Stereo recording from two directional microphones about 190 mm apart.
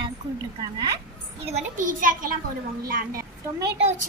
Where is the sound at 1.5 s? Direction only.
45° right (ahead or behind).